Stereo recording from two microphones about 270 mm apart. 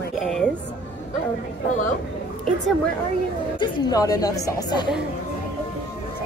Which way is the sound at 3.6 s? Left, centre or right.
Centre.